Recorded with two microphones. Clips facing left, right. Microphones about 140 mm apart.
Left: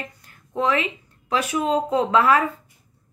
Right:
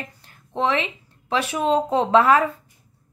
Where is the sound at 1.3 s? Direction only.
30° right (ahead or behind).